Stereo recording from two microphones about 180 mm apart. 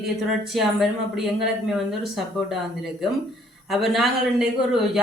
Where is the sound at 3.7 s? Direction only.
Centre (ahead or behind).